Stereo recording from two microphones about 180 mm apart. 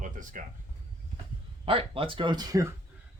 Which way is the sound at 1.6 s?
30° right (ahead or behind).